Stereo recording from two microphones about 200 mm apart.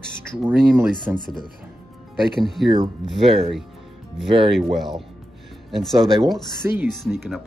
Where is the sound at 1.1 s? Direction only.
20° left (ahead or behind).